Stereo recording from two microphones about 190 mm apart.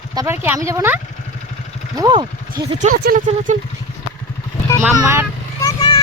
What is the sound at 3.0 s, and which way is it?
Speech, 45° right (ahead or behind).